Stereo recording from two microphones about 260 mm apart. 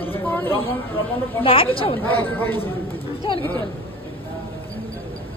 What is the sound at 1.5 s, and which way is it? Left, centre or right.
Speech, left.